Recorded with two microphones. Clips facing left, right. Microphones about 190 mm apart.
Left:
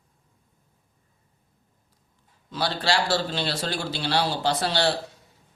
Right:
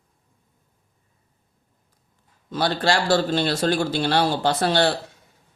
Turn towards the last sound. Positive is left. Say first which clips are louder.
# right 4 dB
turn(degrees=-55)  # may be behind; listen again after turning